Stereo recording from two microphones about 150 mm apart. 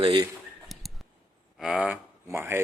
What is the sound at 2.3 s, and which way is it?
Speech, 15° right (ahead or behind).